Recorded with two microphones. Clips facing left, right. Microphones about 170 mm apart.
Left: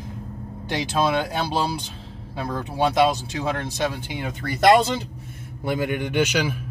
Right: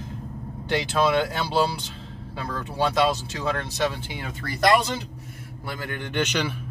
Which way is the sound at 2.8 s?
20° left (ahead or behind).